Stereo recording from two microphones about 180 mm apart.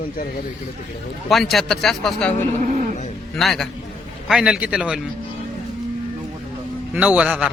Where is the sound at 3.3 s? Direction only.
Centre (ahead or behind).